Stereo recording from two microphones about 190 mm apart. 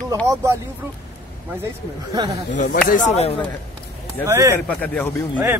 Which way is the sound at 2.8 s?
40° left (ahead or behind).